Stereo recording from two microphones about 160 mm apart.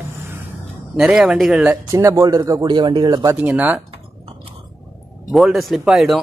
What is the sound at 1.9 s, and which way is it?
Speech, 20° right (ahead or behind).